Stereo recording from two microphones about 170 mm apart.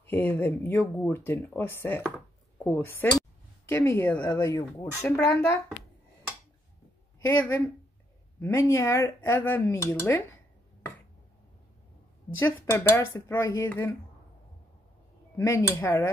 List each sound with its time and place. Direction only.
0.0 s speech: 10° left (ahead or behind)
2.1 s chopping: 15° left (ahead or behind)
3.6 s speech: 15° left (ahead or behind)
7.2 s speech: 20° left (ahead or behind)
12.4 s speech: 15° left (ahead or behind)
15.3 s speech: 15° left (ahead or behind)